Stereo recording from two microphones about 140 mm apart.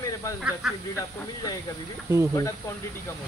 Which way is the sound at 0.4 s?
5° right (ahead or behind).